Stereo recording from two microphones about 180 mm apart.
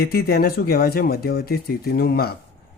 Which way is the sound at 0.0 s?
60° left (ahead or behind).